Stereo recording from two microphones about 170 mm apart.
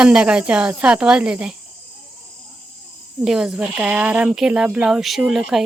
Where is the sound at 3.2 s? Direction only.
5° right (ahead or behind).